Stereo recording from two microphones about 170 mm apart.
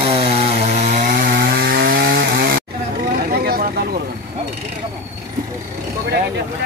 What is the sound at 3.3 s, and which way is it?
Vehicle, 65° right (ahead or behind).